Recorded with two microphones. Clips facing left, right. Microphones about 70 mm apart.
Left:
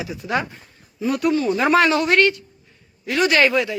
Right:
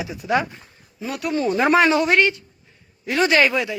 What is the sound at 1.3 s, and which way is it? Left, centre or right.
A woman's voice, right.